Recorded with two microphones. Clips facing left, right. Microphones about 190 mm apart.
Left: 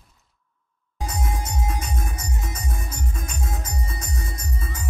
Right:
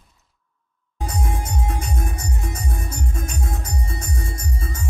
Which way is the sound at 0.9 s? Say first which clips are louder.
Right 2 dB; 55° right (ahead or behind).